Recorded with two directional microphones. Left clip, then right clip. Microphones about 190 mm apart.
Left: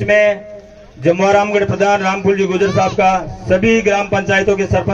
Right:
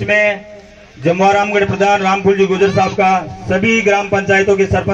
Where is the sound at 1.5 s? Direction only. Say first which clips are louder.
Right 1 dB; 60° left (ahead or behind).